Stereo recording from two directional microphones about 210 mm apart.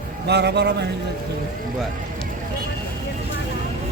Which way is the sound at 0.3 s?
55° right (ahead or behind).